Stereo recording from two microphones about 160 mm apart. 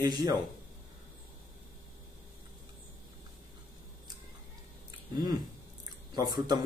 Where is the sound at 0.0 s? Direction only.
25° right (ahead or behind).